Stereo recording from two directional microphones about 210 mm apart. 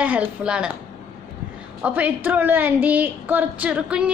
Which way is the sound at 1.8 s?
5° right (ahead or behind).